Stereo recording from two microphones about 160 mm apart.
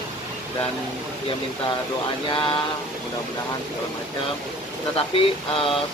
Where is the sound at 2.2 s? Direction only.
30° left (ahead or behind).